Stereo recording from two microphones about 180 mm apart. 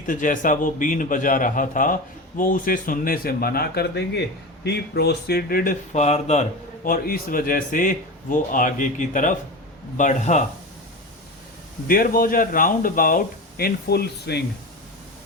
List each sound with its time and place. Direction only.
0.0 s speech: 50° left (ahead or behind)
5.9 s speech: 40° left (ahead or behind)
6.8 s speech: 55° left (ahead or behind)
11.9 s speech: 50° left (ahead or behind)